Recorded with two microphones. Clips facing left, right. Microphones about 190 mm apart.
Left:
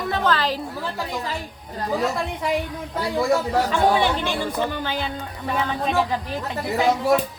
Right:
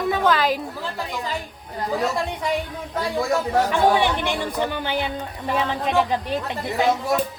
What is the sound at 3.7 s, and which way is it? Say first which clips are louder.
Speech: even; 15° right (ahead or behind).